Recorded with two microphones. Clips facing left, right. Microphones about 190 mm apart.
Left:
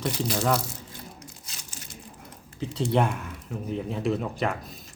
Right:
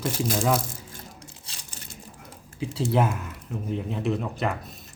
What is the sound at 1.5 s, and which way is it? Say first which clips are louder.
Crumpling: even; 30° right (ahead or behind).